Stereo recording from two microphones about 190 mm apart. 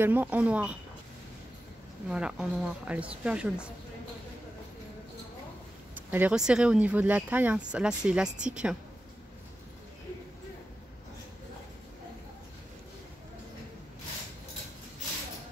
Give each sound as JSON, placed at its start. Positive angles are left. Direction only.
{"t": 0.0, "sound": "speech", "side_deg": -10}
{"t": 2.0, "sound": "speech", "side_deg": -5}
{"t": 5.9, "sound": "speech", "side_deg": -10}